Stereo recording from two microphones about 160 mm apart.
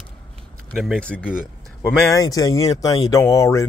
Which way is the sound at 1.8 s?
20° left (ahead or behind).